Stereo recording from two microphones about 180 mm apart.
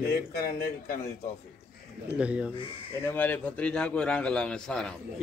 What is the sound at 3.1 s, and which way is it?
A man's voice, 10° left (ahead or behind).